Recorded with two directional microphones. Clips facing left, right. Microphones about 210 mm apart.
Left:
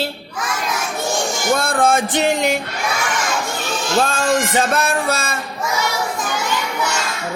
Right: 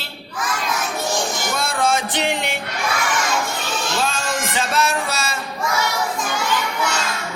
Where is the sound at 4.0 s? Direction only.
55° left (ahead or behind).